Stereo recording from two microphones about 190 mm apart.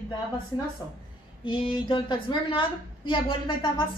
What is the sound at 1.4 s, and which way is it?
A woman's voice, 25° left (ahead or behind).